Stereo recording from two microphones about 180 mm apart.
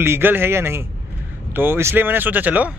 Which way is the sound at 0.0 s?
10° right (ahead or behind).